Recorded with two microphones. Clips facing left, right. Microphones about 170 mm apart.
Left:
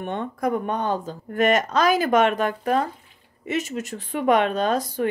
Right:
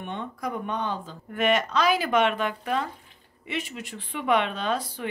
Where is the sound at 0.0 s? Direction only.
50° left (ahead or behind).